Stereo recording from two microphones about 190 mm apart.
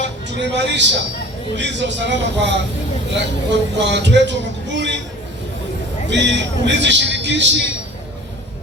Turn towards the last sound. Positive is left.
turn(degrees=-70)  # may be behind; listen again after turning